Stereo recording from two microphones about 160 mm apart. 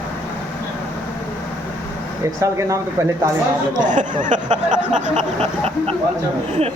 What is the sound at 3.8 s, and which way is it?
Speech, 50° right (ahead or behind).